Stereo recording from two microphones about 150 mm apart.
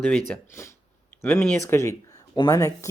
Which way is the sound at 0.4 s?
20° left (ahead or behind).